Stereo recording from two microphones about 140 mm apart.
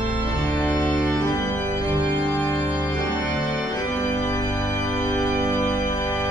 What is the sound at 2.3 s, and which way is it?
Organ, 25° left (ahead or behind).